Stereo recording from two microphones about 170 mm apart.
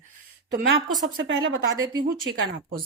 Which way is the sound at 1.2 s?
90° right.